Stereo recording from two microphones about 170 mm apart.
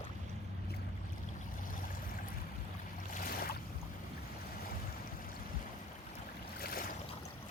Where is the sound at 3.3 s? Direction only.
60° left (ahead or behind).